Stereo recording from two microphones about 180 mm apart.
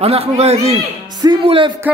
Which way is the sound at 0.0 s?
35° right (ahead or behind).